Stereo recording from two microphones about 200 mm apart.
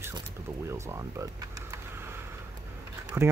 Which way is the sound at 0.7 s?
15° right (ahead or behind).